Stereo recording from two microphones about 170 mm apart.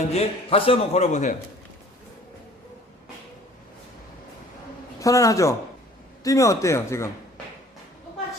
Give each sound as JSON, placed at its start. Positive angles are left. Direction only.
{"t": 0.1, "sound": "a man's voice", "side_deg": 35}
{"t": 4.9, "sound": "a man's voice", "side_deg": 20}